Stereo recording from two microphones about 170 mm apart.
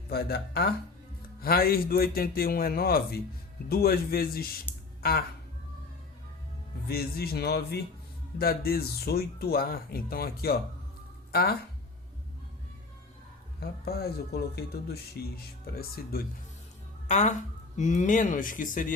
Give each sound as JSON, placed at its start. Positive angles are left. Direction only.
{"t": 0.1, "sound": "speech", "side_deg": 65}
{"t": 4.7, "sound": "a sound", "side_deg": 10}
{"t": 6.8, "sound": "speech", "side_deg": 70}
{"t": 13.6, "sound": "speech", "side_deg": 65}
{"t": 17.1, "sound": "speech", "side_deg": 45}